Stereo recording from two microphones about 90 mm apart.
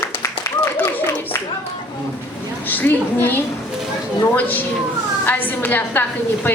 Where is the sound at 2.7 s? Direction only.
20° left (ahead or behind).